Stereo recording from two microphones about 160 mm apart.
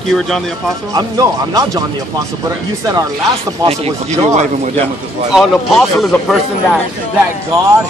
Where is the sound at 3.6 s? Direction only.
40° right (ahead or behind).